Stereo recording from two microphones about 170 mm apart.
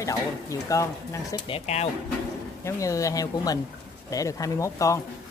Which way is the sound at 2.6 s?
20° left (ahead or behind).